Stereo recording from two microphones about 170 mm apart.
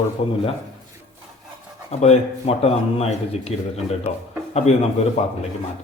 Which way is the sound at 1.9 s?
40° left (ahead or behind).